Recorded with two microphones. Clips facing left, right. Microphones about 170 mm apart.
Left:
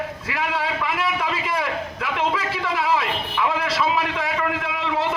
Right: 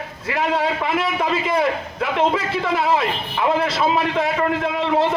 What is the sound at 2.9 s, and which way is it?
A man's voice, 40° right (ahead or behind).